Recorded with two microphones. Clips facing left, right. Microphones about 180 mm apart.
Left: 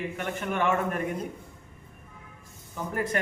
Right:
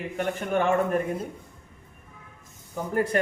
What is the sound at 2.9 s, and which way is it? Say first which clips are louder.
Speech: right 5 dB; 35° right (ahead or behind).